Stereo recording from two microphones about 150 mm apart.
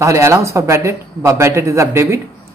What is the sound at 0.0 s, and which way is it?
A man's voice, 20° right (ahead or behind).